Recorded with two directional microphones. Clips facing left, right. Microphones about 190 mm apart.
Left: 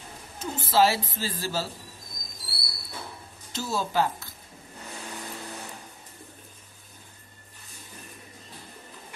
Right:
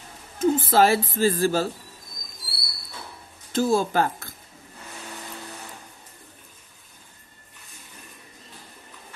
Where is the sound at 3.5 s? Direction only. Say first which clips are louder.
Right 6 dB; 50° right (ahead or behind).